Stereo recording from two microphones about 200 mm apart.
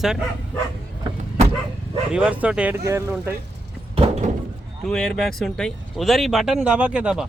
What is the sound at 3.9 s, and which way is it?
Door, 30° right (ahead or behind).